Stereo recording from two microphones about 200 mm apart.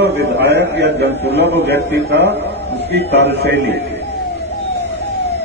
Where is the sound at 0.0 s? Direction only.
55° right (ahead or behind).